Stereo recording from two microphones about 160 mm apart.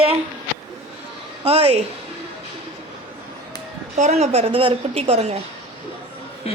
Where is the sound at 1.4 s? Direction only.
40° right (ahead or behind).